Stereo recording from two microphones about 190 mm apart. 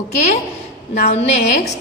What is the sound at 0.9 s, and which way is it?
Speech, 35° left (ahead or behind).